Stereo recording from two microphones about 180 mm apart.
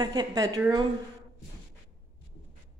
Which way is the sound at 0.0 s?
20° right (ahead or behind).